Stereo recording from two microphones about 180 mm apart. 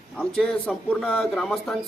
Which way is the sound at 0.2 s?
Centre (ahead or behind).